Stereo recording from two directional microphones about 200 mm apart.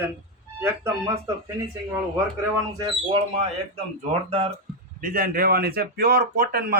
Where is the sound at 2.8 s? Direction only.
25° right (ahead or behind).